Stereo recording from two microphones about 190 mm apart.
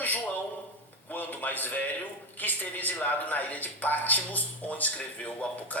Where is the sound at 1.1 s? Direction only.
10° left (ahead or behind).